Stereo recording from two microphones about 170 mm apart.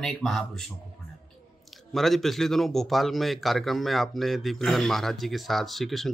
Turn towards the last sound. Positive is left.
turn(degrees=0)  # may be behind; listen again after turning